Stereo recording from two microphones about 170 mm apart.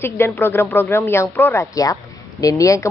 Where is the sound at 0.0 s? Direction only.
15° left (ahead or behind).